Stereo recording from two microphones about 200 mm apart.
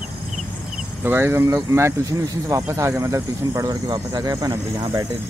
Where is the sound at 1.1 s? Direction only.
10° right (ahead or behind).